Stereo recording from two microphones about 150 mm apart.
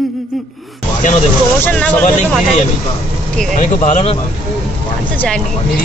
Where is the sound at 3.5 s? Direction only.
55° left (ahead or behind).